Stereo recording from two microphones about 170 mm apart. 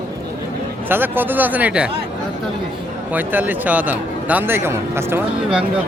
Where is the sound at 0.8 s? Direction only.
10° right (ahead or behind).